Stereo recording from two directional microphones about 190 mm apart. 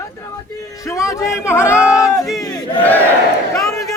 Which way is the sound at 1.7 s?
5° right (ahead or behind).